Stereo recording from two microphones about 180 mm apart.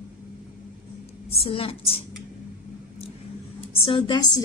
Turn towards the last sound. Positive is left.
turn(degrees=25)  # may be behind; listen again after turning